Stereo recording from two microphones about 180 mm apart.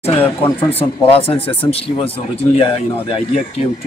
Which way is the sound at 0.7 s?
30° left (ahead or behind).